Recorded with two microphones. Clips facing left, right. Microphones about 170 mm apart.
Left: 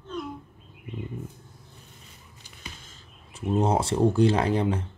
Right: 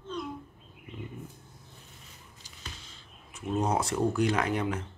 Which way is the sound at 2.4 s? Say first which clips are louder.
Left 3 dB; 60° left (ahead or behind).